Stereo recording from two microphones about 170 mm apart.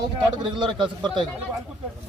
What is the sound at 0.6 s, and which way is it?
Speech, 25° right (ahead or behind).